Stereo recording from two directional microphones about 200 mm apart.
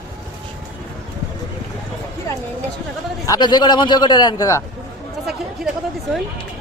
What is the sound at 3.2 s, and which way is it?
A man's voice, 20° left (ahead or behind).